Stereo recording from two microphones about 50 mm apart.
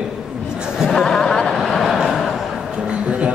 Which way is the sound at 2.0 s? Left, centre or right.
Centre.